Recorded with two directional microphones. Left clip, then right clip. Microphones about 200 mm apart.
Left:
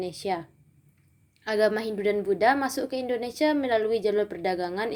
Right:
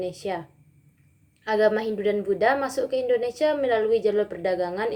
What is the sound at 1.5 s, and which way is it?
A woman's voice, 30° left (ahead or behind).